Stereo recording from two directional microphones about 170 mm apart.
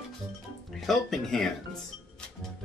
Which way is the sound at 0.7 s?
Centre (ahead or behind).